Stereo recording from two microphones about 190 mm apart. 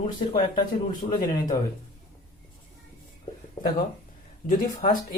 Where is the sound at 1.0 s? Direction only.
35° left (ahead or behind).